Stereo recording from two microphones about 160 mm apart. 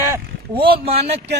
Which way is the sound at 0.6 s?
40° right (ahead or behind).